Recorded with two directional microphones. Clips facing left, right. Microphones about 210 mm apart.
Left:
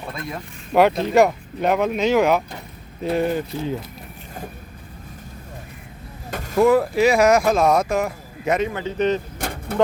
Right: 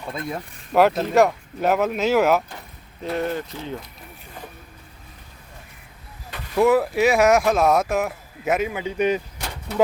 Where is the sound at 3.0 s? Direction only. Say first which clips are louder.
Left 4 dB; 15° left (ahead or behind).